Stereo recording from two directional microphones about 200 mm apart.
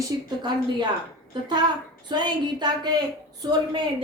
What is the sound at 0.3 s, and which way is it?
Speech, 20° right (ahead or behind).